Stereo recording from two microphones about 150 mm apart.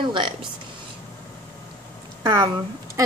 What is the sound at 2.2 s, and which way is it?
Speech, 20° right (ahead or behind).